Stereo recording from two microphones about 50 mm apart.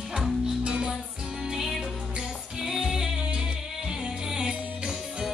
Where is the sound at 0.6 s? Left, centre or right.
Centre.